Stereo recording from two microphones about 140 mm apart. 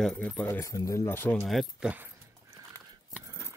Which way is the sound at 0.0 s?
5° left (ahead or behind).